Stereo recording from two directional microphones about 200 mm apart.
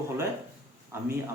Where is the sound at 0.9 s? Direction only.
15° right (ahead or behind).